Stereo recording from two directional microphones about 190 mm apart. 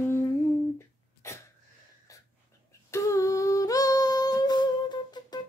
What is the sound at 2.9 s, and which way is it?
Humming, 15° left (ahead or behind).